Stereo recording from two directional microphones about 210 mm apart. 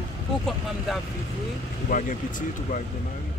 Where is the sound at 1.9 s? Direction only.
40° left (ahead or behind).